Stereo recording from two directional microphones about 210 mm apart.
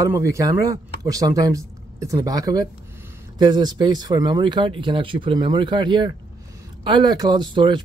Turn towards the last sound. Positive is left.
turn(degrees=-20)  # may be behind; listen again after turning